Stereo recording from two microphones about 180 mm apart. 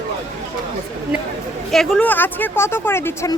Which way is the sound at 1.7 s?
Centre (ahead or behind).